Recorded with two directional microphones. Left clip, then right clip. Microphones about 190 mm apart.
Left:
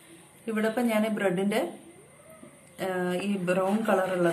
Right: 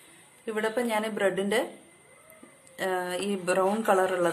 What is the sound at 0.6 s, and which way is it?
A woman's voice, 25° right (ahead or behind).